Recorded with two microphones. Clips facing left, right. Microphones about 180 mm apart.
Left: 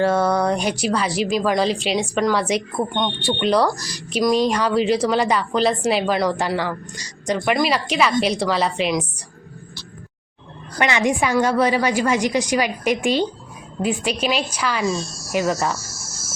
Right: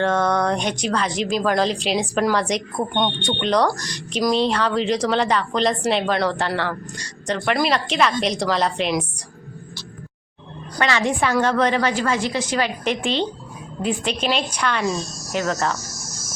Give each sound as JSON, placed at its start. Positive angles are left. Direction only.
{"t": 0.0, "sound": "a woman's voice", "side_deg": 10}
{"t": 10.8, "sound": "a woman's voice", "side_deg": 15}
{"t": 15.0, "sound": "speech", "side_deg": -20}
{"t": 15.8, "sound": "cricket", "side_deg": -15}